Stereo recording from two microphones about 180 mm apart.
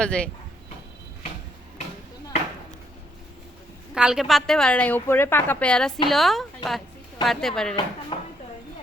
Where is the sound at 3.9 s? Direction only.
5° right (ahead or behind).